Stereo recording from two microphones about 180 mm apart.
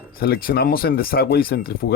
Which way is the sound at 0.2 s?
55° left (ahead or behind).